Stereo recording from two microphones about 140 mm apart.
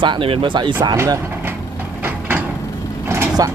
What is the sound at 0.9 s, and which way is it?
Speech, 20° right (ahead or behind).